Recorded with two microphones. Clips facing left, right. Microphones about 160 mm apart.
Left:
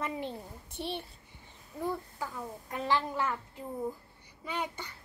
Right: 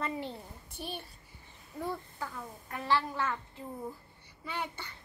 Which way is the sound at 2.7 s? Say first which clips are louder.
Even; 20° left (ahead or behind).